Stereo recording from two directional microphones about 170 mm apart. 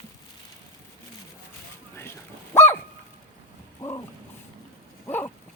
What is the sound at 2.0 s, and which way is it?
Dog, 15° left (ahead or behind).